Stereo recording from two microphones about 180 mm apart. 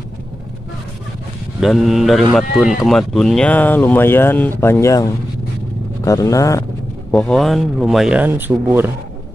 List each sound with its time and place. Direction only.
1.6 s speech: centre (ahead or behind); by 6.6 s 20° left (ahead or behind)
7.1 s speech: 5° left (ahead or behind); by 8.9 s 10° right (ahead or behind)